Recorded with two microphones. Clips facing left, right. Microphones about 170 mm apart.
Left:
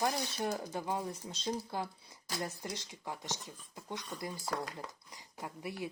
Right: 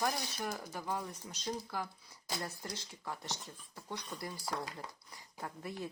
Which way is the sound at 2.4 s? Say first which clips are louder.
Left 7 dB; 20° left (ahead or behind).